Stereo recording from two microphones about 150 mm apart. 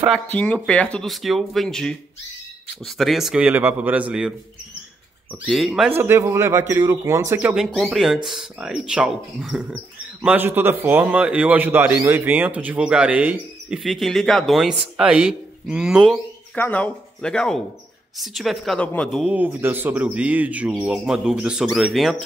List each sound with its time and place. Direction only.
0.3 s speech: 10° left (ahead or behind); by 4.3 s 10° right (ahead or behind)
5.5 s speech: centre (ahead or behind)
5.9 s a man's voice: 15° right (ahead or behind)
7.3 s a man's voice: 5° right (ahead or behind)
16.5 s speech: 10° left (ahead or behind)
19.2 s a man's voice: 10° right (ahead or behind)